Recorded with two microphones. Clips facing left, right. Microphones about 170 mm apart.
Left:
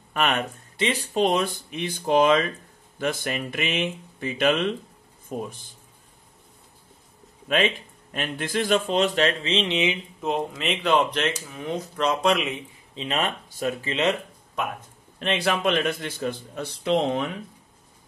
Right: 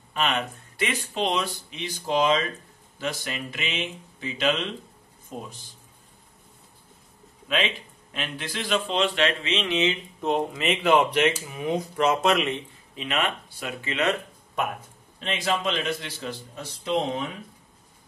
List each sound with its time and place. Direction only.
0.1 s speech: 50° left (ahead or behind)
0.7 s speech: 30° left (ahead or behind)
1.1 s a man's voice: 45° left (ahead or behind)
7.4 s a man's voice: 45° left (ahead or behind)
9.7 s speech: 15° left (ahead or behind)
10.2 s speech: centre (ahead or behind)
12.9 s speech: 30° left (ahead or behind)
15.1 s a man's voice: 65° left (ahead or behind)